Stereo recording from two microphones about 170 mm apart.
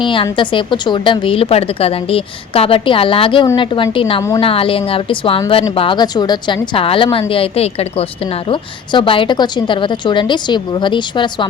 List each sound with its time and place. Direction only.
0.0 s a woman's voice: 30° left (ahead or behind)